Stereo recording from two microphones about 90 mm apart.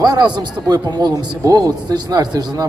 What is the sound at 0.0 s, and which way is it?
A man's voice, 50° right (ahead or behind).